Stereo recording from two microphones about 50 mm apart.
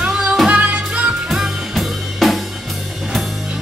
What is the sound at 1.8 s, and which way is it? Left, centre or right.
Drum kit, centre.